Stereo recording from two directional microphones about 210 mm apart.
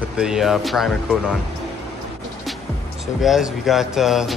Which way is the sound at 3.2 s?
Centre (ahead or behind).